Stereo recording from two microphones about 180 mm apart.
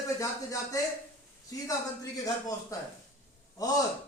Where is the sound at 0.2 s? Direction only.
20° left (ahead or behind).